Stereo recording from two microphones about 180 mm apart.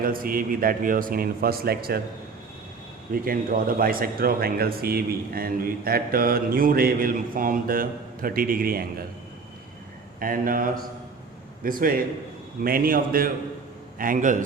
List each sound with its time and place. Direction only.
0.0 s a man's voice: 50° right (ahead or behind)
3.2 s speech: 55° right (ahead or behind)
10.2 s a man's voice: 50° right (ahead or behind)